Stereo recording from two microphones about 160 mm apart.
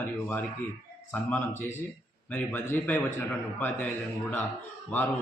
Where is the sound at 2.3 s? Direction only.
10° left (ahead or behind).